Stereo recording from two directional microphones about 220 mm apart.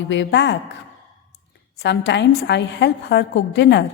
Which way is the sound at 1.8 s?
55° left (ahead or behind).